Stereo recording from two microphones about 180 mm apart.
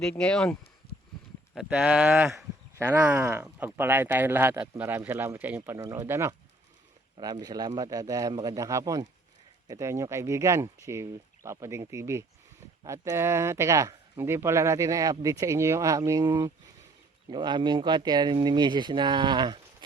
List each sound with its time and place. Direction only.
0.0 s speech: 5° left (ahead or behind)
1.5 s speech: 5° right (ahead or behind); by 19.5 s 25° right (ahead or behind)